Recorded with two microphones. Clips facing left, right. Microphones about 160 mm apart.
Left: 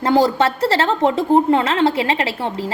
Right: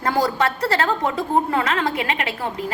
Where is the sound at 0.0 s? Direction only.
25° left (ahead or behind).